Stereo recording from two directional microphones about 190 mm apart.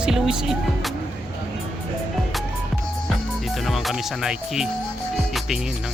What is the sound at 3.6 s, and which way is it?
Speech, centre (ahead or behind).